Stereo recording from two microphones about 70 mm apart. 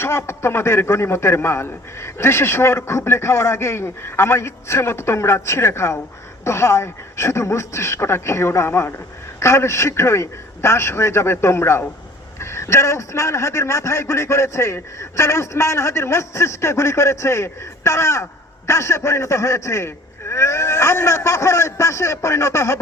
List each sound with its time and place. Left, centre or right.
0.0 s a man's voice: left